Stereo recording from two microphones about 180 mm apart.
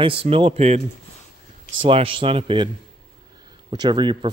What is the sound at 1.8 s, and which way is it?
Speech, 30° right (ahead or behind).